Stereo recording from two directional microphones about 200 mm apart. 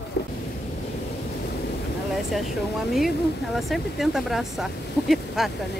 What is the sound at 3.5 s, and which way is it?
Speech, centre (ahead or behind).